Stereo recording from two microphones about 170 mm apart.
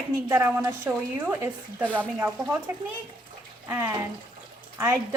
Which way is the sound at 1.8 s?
10° left (ahead or behind).